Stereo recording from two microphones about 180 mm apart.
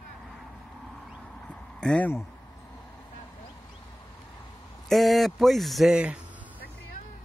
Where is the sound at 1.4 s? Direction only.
5° left (ahead or behind).